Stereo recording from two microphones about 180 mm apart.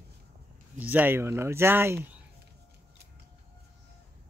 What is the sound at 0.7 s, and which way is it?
Speech, 10° right (ahead or behind).